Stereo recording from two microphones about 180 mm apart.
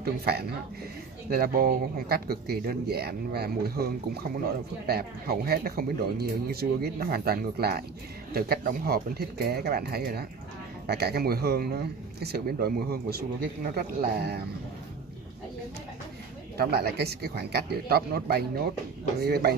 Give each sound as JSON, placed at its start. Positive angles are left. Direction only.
{"t": 0.0, "sound": "speech", "side_deg": -60}
{"t": 16.5, "sound": "speech", "side_deg": -60}